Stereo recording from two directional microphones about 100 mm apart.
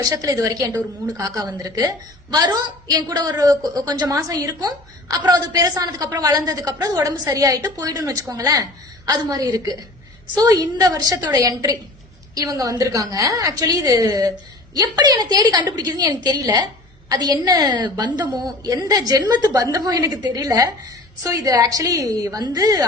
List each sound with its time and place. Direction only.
0.0 s a woman's voice: 35° right (ahead or behind)
10.5 s a woman's voice: 40° right (ahead or behind)